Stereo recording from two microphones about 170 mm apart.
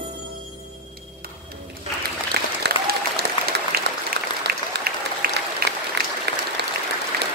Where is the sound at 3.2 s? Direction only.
80° right.